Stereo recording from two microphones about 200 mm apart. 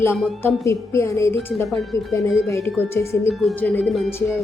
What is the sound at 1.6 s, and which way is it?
Speech, centre (ahead or behind).